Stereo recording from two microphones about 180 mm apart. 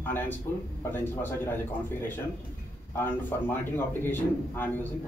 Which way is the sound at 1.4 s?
10° left (ahead or behind).